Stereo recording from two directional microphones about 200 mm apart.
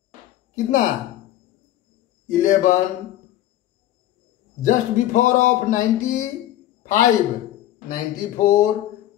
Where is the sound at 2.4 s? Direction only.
40° left (ahead or behind).